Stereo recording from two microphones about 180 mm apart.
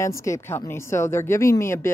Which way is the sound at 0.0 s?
15° left (ahead or behind).